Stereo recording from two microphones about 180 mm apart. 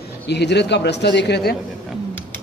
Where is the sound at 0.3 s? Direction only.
70° left (ahead or behind).